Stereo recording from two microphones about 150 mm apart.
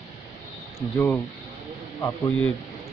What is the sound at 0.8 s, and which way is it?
A man's voice, 15° left (ahead or behind).